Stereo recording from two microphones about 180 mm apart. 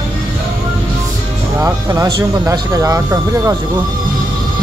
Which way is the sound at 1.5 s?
20° right (ahead or behind).